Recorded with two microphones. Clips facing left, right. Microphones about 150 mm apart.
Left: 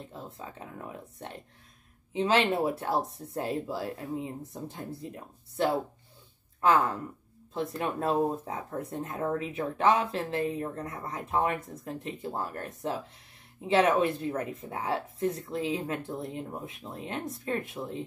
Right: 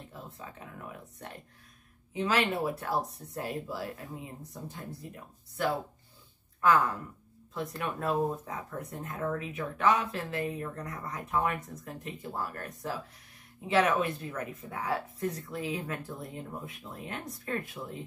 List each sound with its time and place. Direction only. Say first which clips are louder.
0.1 s speech: left 3 dB; 30° left (ahead or behind)